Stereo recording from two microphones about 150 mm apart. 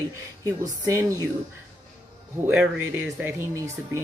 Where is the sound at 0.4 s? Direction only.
20° right (ahead or behind).